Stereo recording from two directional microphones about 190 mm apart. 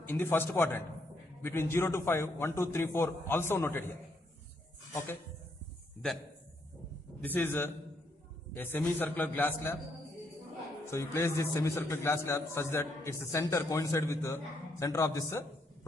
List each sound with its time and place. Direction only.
0.0 s a man's voice: 10° left (ahead or behind)
4.9 s a man's voice: 15° left (ahead or behind)
7.2 s a man's voice: 10° left (ahead or behind)
10.9 s a man's voice: 15° left (ahead or behind)